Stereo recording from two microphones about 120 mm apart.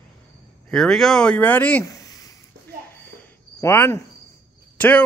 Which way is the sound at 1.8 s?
30° left (ahead or behind).